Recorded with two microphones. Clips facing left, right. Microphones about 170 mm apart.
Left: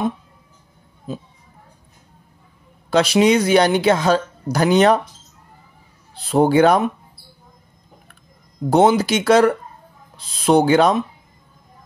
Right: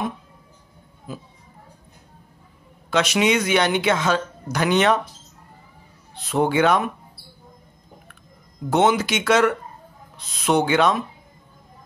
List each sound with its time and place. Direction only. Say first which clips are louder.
1.1 s speech: left 5 dB; 25° left (ahead or behind)
2.9 s speech: left 5 dB; 35° left (ahead or behind)
6.1 s speech: left 5 dB; 35° left (ahead or behind)
8.6 s speech: left 4 dB; 35° left (ahead or behind)